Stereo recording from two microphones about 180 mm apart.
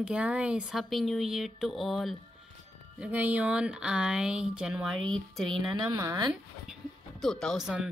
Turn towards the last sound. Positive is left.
turn(degrees=0)  # may be behind; listen again after turning